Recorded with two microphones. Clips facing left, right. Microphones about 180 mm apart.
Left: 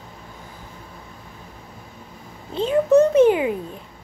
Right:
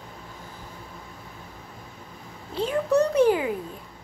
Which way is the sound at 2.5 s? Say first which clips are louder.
Left 6 dB; 20° left (ahead or behind).